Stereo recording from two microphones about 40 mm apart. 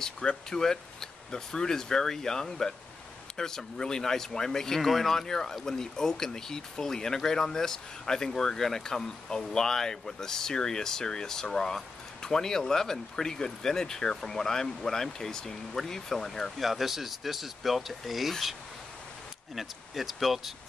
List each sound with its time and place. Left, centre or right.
0.5 s speech: centre
16.5 s speech: centre
19.5 s speech: centre